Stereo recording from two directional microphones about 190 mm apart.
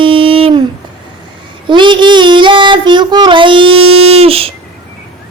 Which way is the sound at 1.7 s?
25° right (ahead or behind).